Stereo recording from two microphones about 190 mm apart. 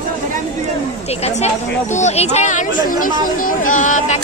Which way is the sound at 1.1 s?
35° left (ahead or behind).